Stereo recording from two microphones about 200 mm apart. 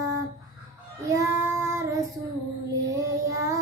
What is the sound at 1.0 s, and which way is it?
Child singing, 15° right (ahead or behind).